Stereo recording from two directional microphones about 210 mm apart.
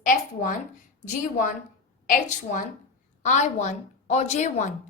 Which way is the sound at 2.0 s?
40° left (ahead or behind).